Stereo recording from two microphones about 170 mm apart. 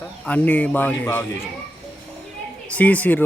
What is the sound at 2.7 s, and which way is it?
Speech, 10° left (ahead or behind).